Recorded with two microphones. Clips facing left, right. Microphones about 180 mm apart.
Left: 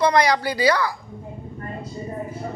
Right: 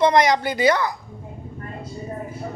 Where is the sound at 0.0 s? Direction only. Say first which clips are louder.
Right 2 dB; 20° right (ahead or behind).